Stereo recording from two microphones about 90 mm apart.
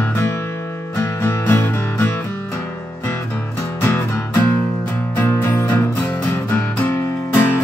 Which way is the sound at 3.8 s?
25° left (ahead or behind).